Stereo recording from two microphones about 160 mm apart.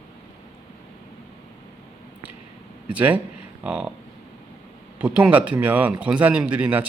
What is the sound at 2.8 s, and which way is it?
Speech, 10° right (ahead or behind).